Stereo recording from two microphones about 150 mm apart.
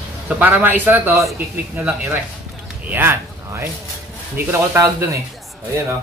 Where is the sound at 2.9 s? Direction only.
15° right (ahead or behind).